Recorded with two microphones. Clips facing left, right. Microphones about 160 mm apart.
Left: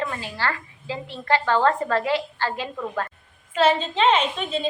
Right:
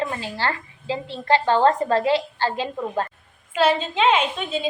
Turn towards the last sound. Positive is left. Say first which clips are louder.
# right 1 dB
turn(degrees=-5)  # may be behind; listen again after turning